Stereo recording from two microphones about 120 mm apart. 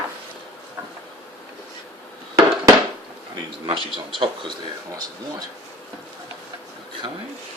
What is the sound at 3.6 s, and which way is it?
Speech, 45° right (ahead or behind).